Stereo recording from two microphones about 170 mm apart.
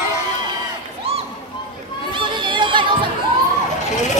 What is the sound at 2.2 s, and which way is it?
Chatter, 30° right (ahead or behind).